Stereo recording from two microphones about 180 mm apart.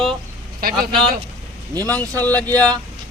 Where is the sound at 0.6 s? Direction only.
55° right (ahead or behind).